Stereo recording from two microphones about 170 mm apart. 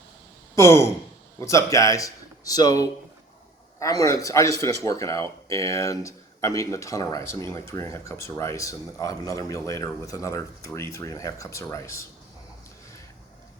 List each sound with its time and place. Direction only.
0.5 s a man's voice: 15° left (ahead or behind)